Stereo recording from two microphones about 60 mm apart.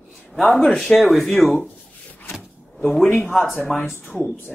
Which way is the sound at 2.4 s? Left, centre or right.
Centre.